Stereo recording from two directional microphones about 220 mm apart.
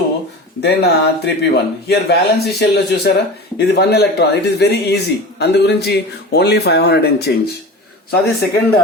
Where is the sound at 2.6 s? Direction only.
50° left (ahead or behind).